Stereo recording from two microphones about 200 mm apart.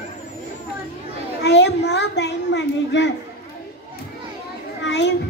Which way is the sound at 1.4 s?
60° left (ahead or behind).